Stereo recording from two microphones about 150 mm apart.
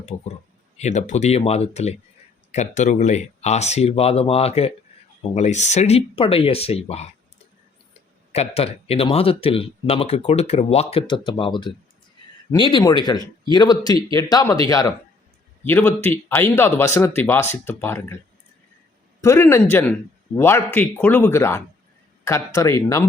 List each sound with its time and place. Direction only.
0.1 s speech: 55° left (ahead or behind)
8.3 s a man's voice: 45° left (ahead or behind); by 14.9 s 25° left (ahead or behind)
15.6 s speech: 10° left (ahead or behind)
19.2 s a man's voice: 15° left (ahead or behind)